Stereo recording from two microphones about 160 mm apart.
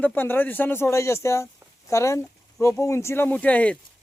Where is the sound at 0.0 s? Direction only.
10° left (ahead or behind).